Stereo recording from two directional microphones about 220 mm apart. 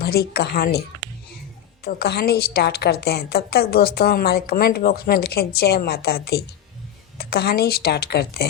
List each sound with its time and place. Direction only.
0.0 s a woman's voice: 45° left (ahead or behind)
1.8 s a woman's voice: 45° left (ahead or behind)